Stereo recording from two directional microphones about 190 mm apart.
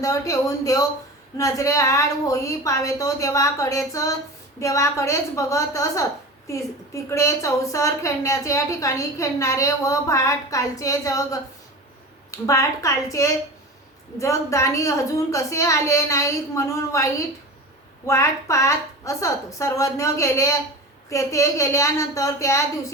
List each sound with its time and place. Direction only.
0.0 s a woman's voice: 15° left (ahead or behind)
12.5 s a woman's voice: 15° left (ahead or behind)